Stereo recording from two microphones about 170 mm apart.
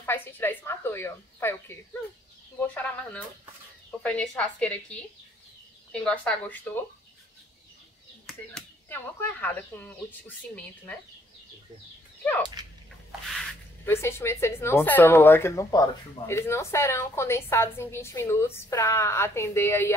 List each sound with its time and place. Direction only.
0.0 s speech: 10° left (ahead or behind)
8.3 s a sound: centre (ahead or behind)
8.9 s speech: 10° left (ahead or behind)
12.2 s whip: 10° left (ahead or behind)
13.8 s speech: 15° left (ahead or behind)